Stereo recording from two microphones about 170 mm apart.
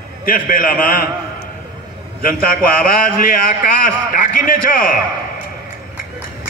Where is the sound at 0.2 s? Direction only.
55° left (ahead or behind).